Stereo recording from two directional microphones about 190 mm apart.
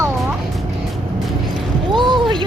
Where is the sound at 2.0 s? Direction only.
25° right (ahead or behind).